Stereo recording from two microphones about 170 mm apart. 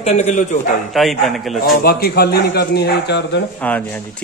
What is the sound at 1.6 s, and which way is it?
Speech, 65° left (ahead or behind).